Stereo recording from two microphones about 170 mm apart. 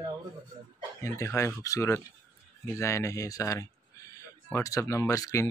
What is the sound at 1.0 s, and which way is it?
Speech, 20° left (ahead or behind).